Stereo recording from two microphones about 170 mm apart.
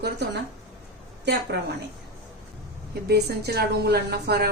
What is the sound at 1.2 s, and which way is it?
Speech, 85° right.